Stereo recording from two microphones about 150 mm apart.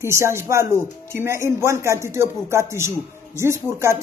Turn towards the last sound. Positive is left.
turn(degrees=-20)  # may be behind; listen again after turning